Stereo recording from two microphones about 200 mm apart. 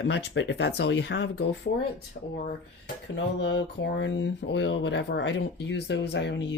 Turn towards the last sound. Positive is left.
turn(degrees=60)  # may be behind; listen again after turning